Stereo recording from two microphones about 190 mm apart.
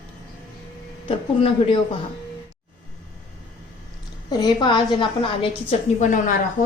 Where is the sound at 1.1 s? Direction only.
30° left (ahead or behind).